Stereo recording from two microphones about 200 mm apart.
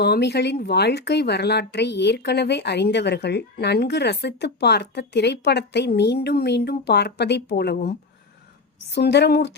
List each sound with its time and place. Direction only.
0.0 s speech: 55° left (ahead or behind)